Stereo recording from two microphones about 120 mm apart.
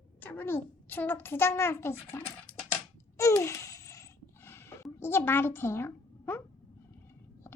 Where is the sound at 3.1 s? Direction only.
25° left (ahead or behind).